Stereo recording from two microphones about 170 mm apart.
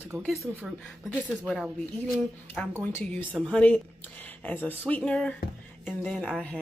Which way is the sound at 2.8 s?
15° left (ahead or behind).